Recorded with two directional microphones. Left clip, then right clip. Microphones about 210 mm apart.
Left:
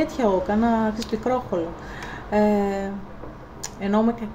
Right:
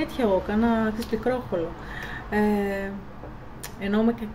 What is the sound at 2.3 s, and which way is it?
Speech, 5° right (ahead or behind).